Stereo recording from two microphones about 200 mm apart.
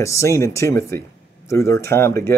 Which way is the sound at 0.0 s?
15° left (ahead or behind).